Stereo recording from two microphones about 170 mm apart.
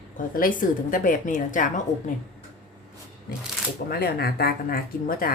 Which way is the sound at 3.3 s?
65° left (ahead or behind).